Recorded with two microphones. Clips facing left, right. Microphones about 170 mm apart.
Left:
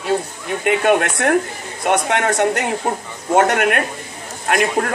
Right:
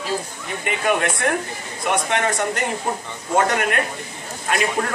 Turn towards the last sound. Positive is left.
turn(degrees=55)  # may be behind; listen again after turning